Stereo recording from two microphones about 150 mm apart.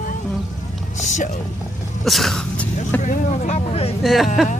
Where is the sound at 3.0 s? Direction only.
55° left (ahead or behind).